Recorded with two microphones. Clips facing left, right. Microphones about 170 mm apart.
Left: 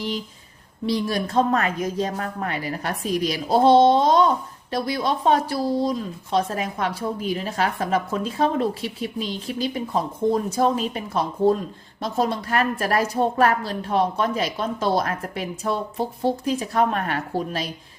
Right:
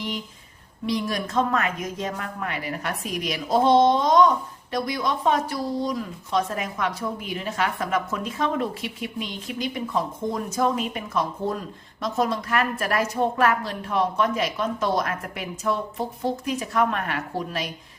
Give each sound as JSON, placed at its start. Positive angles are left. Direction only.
{"t": 0.9, "sound": "speech", "side_deg": 30}